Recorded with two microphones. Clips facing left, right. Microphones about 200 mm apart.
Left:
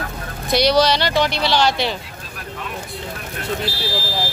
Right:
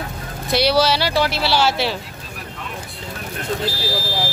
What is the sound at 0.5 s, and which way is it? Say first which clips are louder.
Speech: left 1 dB; 5° right (ahead or behind).